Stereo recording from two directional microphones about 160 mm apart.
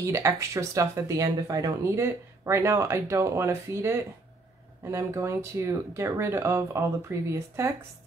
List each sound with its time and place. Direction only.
0.0 s speech: 20° right (ahead or behind)